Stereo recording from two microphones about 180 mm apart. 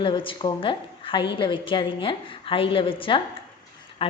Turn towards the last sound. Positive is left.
turn(degrees=30)  # may be behind; listen again after turning